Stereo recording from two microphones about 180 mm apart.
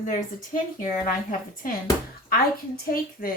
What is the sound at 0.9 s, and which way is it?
Speech, 45° left (ahead or behind).